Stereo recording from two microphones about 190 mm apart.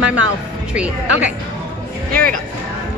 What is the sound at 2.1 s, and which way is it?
Speech, 50° right (ahead or behind).